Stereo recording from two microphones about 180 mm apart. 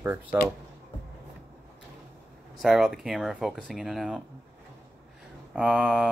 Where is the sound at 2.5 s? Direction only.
Centre (ahead or behind).